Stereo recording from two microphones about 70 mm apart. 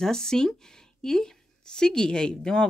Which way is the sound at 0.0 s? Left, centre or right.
Centre.